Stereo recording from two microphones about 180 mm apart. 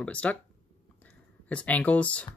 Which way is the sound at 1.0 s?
10° left (ahead or behind).